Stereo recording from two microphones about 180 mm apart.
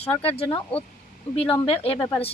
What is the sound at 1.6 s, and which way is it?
Speech, 30° left (ahead or behind).